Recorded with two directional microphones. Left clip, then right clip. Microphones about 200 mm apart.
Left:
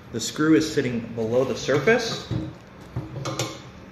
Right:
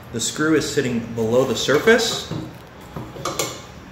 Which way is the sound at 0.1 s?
20° left (ahead or behind).